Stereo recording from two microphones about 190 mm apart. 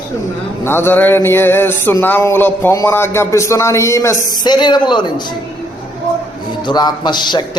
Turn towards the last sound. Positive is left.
turn(degrees=25)  # may be behind; listen again after turning